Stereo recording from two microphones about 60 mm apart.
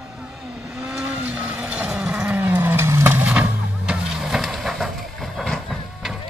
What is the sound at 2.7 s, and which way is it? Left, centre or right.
Vehicle, right.